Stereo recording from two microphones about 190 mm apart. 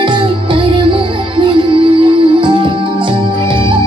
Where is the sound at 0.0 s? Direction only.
25° right (ahead or behind).